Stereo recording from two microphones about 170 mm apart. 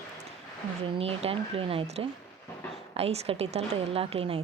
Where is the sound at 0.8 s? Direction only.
35° right (ahead or behind).